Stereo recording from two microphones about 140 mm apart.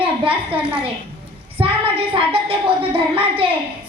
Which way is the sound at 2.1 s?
40° right (ahead or behind).